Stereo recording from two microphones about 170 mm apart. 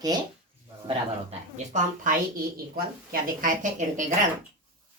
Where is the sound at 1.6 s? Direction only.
50° right (ahead or behind).